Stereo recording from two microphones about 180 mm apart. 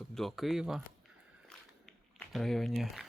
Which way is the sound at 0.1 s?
Centre (ahead or behind).